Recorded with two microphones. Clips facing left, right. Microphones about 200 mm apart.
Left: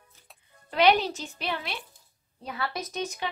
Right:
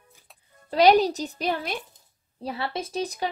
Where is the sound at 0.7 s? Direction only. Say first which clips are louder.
Right 5 dB; 40° right (ahead or behind).